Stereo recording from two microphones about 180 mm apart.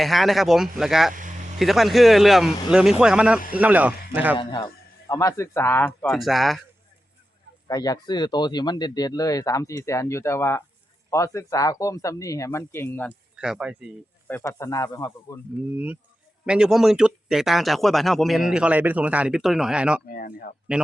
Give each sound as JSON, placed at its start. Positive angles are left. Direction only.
{"t": 0.0, "sound": "speech", "side_deg": 0}
{"t": 1.1, "sound": "vehicle", "side_deg": -45}
{"t": 1.5, "sound": "speech", "side_deg": 0}
{"t": 4.4, "sound": "speech", "side_deg": 25}
{"t": 5.0, "sound": "speech", "side_deg": 15}
{"t": 6.1, "sound": "speech", "side_deg": 0}
{"t": 7.7, "sound": "speech", "side_deg": 20}
{"t": 13.3, "sound": "speech", "side_deg": -5}
{"t": 14.3, "sound": "speech", "side_deg": 15}
{"t": 16.5, "sound": "speech", "side_deg": -5}
{"t": 20.1, "sound": "speech", "side_deg": 50}
{"t": 20.7, "sound": "speech", "side_deg": -5}